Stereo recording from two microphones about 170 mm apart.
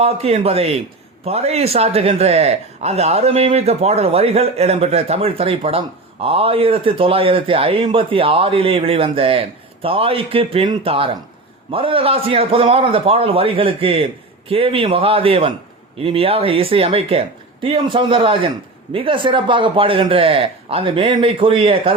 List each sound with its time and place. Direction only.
0.0 s a man's voice: 35° right (ahead or behind)